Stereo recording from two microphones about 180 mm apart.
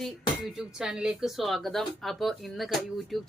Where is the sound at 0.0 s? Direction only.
Centre (ahead or behind).